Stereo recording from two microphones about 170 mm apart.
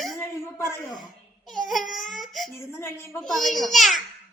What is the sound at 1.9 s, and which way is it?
Baby cry, centre (ahead or behind).